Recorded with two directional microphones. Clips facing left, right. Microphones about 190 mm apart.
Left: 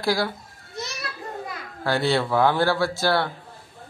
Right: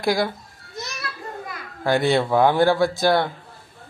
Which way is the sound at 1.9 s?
15° right (ahead or behind).